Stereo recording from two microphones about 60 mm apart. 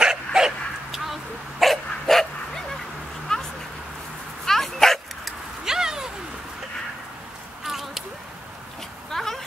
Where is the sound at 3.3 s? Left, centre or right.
Centre.